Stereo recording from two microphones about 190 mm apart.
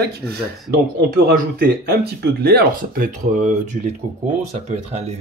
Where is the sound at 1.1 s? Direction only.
50° right (ahead or behind).